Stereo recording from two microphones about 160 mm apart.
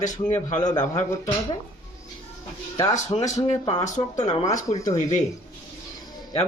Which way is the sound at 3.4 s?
35° left (ahead or behind).